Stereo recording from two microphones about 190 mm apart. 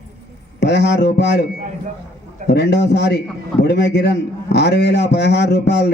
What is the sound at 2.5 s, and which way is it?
A man's voice, 65° left (ahead or behind).